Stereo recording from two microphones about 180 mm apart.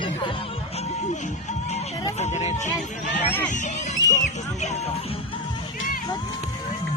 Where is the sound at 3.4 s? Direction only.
45° left (ahead or behind).